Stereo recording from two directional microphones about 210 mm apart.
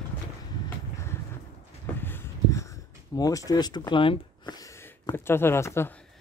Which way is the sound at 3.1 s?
15° left (ahead or behind).